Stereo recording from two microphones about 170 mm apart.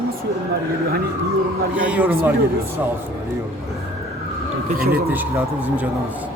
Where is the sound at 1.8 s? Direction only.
10° right (ahead or behind).